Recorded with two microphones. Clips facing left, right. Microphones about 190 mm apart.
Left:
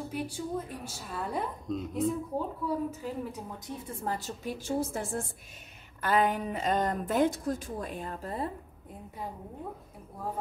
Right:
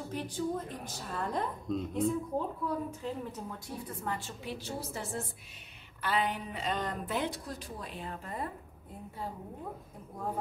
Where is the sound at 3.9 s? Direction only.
35° left (ahead or behind).